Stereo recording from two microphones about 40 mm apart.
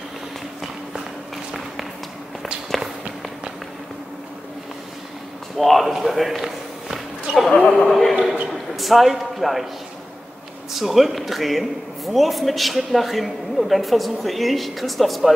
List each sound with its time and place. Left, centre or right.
2.7 s walk: centre
5.6 s a man's voice: centre
6.0 s a sound: centre
7.3 s speech: right
7.8 s a man's voice: centre
10.7 s a man's voice: centre